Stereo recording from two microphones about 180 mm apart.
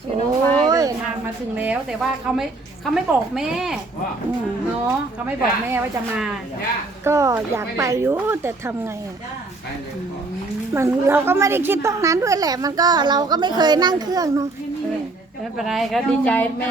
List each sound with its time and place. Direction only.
0.6 s a sound: 20° right (ahead or behind)
1.5 s a woman's voice: 10° right (ahead or behind)
4.9 s a woman's voice: 10° right (ahead or behind)
10.8 s a woman's voice: 15° right (ahead or behind)
15.5 s a woman's voice: centre (ahead or behind)